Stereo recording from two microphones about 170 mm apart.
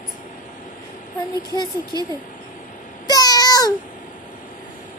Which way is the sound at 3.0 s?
25° left (ahead or behind).